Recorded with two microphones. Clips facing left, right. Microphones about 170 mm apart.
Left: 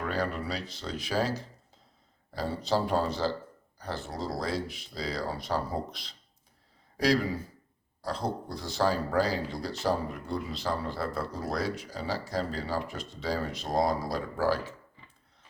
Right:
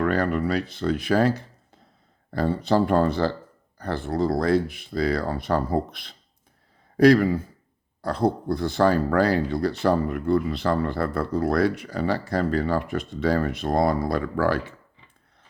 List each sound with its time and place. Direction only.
0.0 s speech: 60° right (ahead or behind)